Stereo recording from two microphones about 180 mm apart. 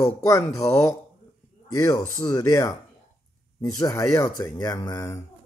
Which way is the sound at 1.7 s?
20° left (ahead or behind).